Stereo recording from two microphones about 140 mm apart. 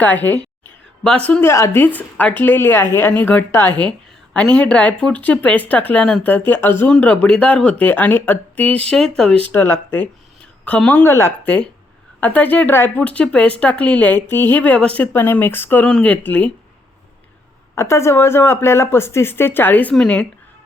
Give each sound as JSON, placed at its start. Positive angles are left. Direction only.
{"t": 0.0, "sound": "a woman's voice", "side_deg": 10}
{"t": 9.5, "sound": "a woman's voice", "side_deg": 15}
{"t": 17.7, "sound": "a woman's voice", "side_deg": 20}